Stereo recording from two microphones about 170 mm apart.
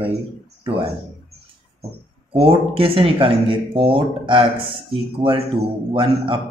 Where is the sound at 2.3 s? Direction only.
30° right (ahead or behind).